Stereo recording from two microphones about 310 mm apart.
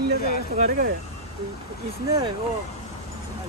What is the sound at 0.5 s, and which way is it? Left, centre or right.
Speech, right.